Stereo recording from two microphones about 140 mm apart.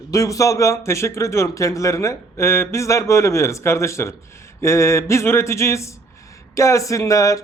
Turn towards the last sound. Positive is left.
turn(degrees=25)  # may be behind; listen again after turning